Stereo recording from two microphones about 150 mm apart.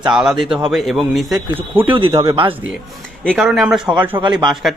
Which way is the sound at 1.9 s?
35° right (ahead or behind).